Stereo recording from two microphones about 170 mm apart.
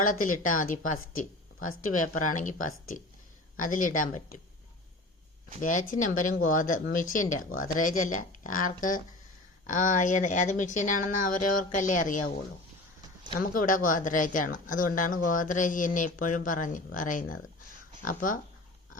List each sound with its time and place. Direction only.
0.0 s speech: 55° left (ahead or behind)
5.5 s speech: 50° left (ahead or behind)
13.4 s speech: 55° left (ahead or behind)